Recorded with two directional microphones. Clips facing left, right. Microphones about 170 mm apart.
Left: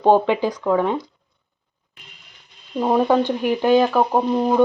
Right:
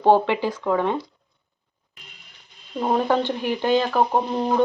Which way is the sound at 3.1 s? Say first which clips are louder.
Left 4 dB; 15° left (ahead or behind).